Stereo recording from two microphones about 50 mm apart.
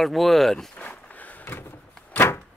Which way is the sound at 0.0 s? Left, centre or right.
Centre.